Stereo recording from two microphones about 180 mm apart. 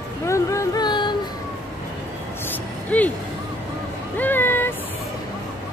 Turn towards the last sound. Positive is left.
turn(degrees=10)  # may be behind; listen again after turning